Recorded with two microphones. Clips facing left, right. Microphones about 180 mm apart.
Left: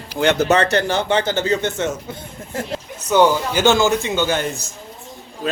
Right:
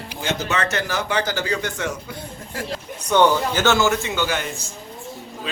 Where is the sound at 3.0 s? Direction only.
10° left (ahead or behind).